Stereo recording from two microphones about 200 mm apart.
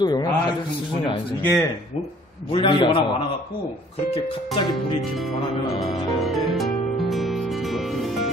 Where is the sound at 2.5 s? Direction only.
25° left (ahead or behind).